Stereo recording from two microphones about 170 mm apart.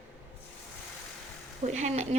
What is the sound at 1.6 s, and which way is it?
Speech, 45° right (ahead or behind).